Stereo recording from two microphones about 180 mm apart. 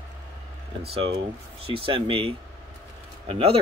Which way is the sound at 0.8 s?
35° right (ahead or behind).